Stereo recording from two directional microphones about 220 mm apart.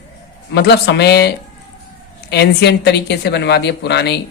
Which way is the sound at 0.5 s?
50° left (ahead or behind).